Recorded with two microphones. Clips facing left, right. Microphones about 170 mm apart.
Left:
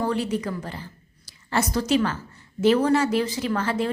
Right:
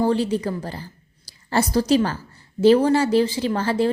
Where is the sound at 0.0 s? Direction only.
30° right (ahead or behind).